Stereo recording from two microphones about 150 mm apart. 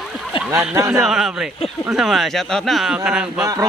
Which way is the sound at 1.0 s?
5° right (ahead or behind).